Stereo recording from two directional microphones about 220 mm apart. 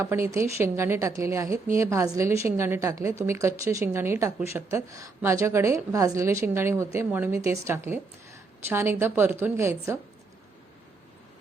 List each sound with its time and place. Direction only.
0.0 s a woman's voice: 10° right (ahead or behind)